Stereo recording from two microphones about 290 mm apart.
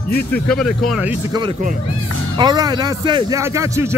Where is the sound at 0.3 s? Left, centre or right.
Centre.